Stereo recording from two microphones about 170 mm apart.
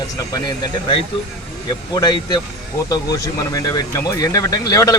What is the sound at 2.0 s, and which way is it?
Speech, 25° left (ahead or behind).